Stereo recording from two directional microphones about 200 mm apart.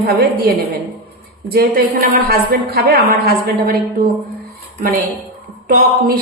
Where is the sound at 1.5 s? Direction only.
50° right (ahead or behind).